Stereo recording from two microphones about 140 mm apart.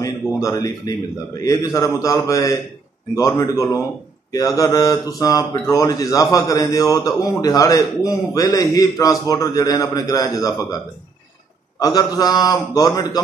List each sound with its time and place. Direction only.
0.0 s speech: 25° left (ahead or behind)
11.8 s speech: 25° left (ahead or behind)